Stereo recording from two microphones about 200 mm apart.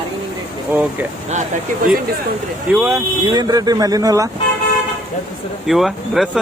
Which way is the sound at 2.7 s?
10° right (ahead or behind).